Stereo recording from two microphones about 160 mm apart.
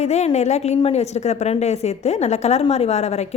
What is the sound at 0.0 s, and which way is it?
A woman's voice, 45° left (ahead or behind).